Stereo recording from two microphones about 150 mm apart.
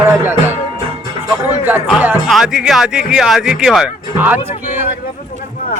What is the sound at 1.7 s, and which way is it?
A man's voice, 5° right (ahead or behind).